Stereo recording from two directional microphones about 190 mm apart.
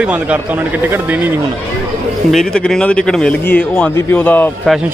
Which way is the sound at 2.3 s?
5° left (ahead or behind).